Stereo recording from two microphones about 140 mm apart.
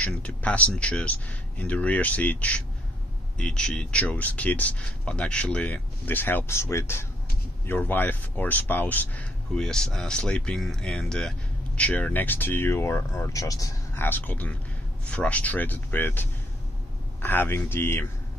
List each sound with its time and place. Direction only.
0.0 s speech: 10° left (ahead or behind)